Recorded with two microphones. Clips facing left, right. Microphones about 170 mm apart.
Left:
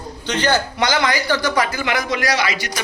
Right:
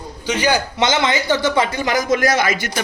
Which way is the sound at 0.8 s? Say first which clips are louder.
Right 1 dB; 25° right (ahead or behind).